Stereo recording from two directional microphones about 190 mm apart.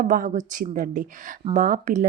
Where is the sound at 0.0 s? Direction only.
45° right (ahead or behind).